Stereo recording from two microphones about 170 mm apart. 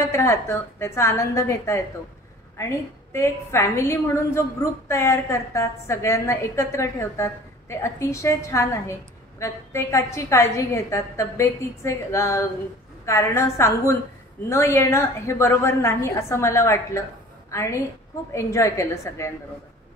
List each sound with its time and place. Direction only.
0.0 s a woman's voice: 15° left (ahead or behind)